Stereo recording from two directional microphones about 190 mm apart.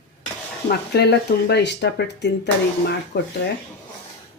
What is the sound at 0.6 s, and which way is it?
Speech, 60° left (ahead or behind).